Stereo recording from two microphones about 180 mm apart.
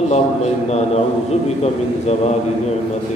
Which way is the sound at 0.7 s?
35° left (ahead or behind).